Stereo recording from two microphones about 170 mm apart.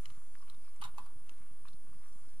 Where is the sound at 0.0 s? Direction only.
35° right (ahead or behind).